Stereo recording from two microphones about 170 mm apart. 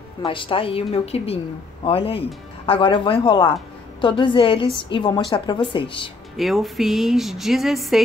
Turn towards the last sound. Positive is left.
turn(degrees=0)  # may be behind; listen again after turning